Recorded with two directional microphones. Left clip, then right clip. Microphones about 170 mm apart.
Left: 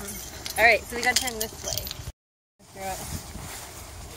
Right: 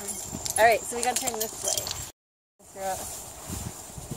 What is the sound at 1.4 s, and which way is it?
Speech, 30° right (ahead or behind).